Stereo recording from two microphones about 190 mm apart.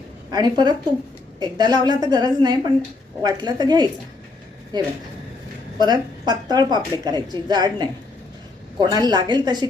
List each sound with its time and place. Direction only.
0.3 s a woman's voice: 20° right (ahead or behind)